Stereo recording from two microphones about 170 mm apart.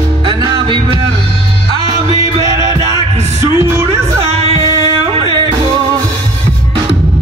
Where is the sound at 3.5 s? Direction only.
15° right (ahead or behind).